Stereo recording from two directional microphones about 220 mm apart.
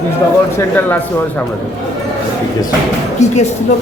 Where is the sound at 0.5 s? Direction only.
10° left (ahead or behind).